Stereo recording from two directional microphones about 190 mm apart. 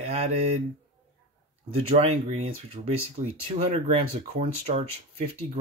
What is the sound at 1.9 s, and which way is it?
Speech, 35° right (ahead or behind).